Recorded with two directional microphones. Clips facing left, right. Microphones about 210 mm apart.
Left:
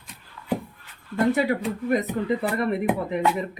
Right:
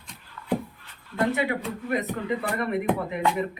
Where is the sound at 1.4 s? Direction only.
35° left (ahead or behind).